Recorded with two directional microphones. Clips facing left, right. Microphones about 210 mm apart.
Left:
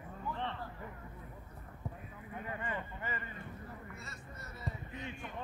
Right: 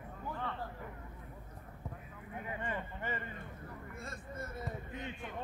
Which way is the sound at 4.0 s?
50° right (ahead or behind).